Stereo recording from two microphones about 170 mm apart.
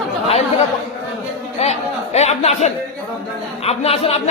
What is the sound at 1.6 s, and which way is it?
A man's voice, 40° left (ahead or behind).